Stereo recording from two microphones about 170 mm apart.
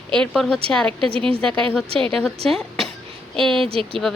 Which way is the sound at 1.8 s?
30° right (ahead or behind).